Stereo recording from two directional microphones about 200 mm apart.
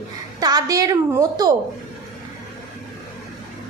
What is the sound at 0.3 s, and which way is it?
A woman's voice, 20° right (ahead or behind).